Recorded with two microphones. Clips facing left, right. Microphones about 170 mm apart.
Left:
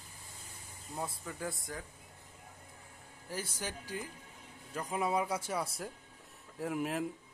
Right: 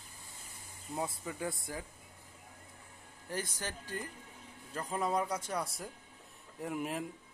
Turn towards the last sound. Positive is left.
turn(degrees=0)  # may be behind; listen again after turning